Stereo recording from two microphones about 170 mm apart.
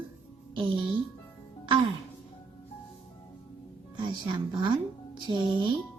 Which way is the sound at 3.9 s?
30° right (ahead or behind).